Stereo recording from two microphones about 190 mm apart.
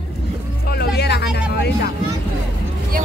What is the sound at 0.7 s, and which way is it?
Music, 60° left (ahead or behind).